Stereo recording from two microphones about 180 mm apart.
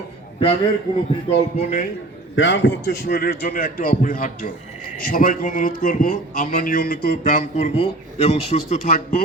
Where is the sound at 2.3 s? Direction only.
90° left.